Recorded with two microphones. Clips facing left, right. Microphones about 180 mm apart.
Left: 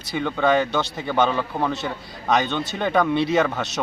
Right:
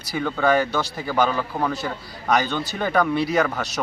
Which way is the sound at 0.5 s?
20° left (ahead or behind).